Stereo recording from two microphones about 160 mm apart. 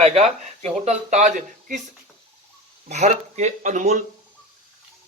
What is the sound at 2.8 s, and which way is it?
Speech, 45° right (ahead or behind).